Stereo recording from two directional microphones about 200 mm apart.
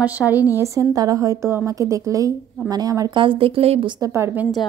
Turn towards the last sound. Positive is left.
turn(degrees=-10)  # may be behind; listen again after turning